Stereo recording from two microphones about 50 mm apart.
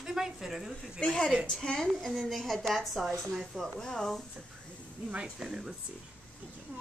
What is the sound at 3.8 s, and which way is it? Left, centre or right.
Speech, centre.